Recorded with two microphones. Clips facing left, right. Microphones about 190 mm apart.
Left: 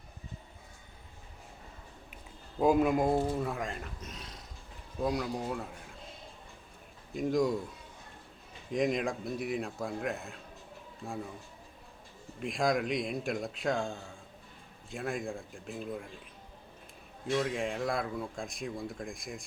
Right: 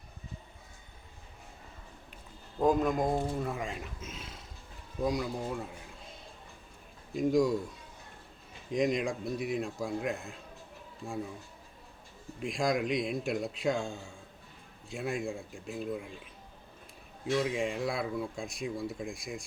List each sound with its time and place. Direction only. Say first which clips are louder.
2.6 s speech: left 1 dB; 10° left (ahead or behind)
7.1 s speech: right 2 dB; centre (ahead or behind)
8.7 s speech: right 1 dB; centre (ahead or behind)
12.4 s speech: even; centre (ahead or behind)
17.4 s speech: right 1 dB; centre (ahead or behind)